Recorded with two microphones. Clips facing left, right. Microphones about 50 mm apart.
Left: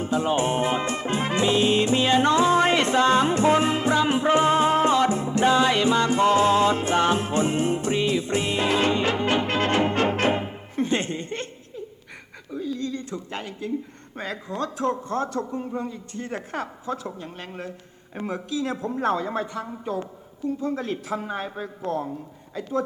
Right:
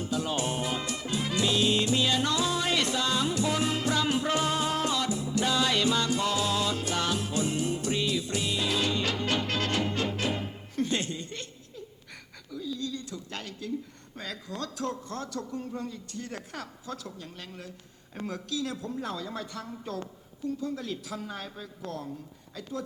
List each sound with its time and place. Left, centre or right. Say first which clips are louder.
0.0 s music: left 8 dB; left
10.4 s music: left 4 dB; left
12.5 s a sound: left 6 dB; left
13.4 s a woman's voice: left 6 dB; left
20.5 s a man's voice: left 6 dB; left